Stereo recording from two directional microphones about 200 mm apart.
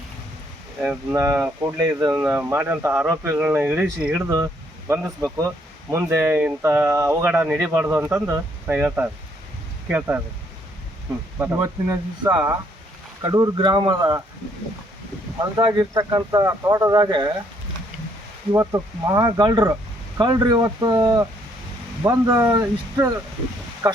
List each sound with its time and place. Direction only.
0.8 s speech: 10° right (ahead or behind)
5.9 s speech: 15° right (ahead or behind)
11.3 s speech: 15° right (ahead or behind)
15.5 s speech: 20° right (ahead or behind)
18.5 s speech: 15° right (ahead or behind)